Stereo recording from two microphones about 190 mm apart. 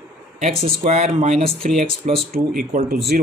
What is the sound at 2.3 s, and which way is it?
Speech, 50° right (ahead or behind).